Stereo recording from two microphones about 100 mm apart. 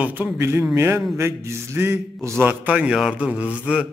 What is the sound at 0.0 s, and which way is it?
A man's voice, 20° right (ahead or behind).